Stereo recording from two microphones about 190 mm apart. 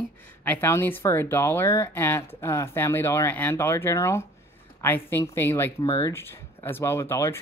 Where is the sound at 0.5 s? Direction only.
10° left (ahead or behind).